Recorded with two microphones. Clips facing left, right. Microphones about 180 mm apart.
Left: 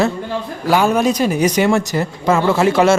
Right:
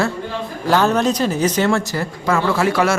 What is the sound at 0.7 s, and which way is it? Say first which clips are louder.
Speech: left 2 dB; 10° left (ahead or behind).